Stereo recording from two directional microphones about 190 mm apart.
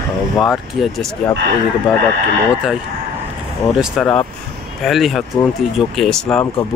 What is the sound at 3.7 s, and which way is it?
Speech, 5° left (ahead or behind).